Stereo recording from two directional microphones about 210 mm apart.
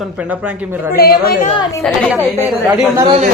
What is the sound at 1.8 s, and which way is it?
A woman's voice, 10° right (ahead or behind).